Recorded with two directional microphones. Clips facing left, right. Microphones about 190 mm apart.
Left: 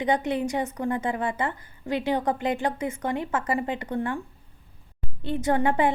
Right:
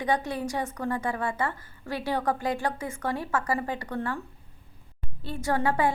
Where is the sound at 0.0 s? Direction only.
20° left (ahead or behind).